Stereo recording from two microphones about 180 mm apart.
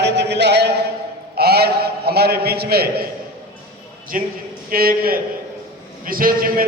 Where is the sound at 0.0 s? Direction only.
75° right (ahead or behind).